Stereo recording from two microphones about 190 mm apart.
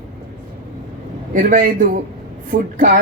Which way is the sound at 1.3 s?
45° right (ahead or behind).